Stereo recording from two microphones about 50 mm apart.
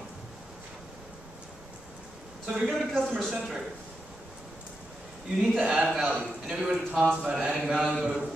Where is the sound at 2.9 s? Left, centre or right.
Centre.